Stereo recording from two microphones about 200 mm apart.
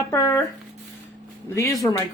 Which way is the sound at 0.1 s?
15° left (ahead or behind).